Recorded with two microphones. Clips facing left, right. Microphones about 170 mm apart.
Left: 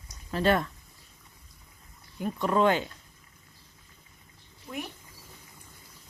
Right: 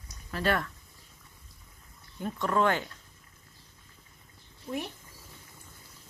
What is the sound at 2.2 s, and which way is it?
Speech, 15° left (ahead or behind).